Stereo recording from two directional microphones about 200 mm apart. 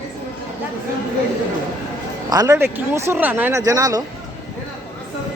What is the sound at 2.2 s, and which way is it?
Speech, 20° right (ahead or behind).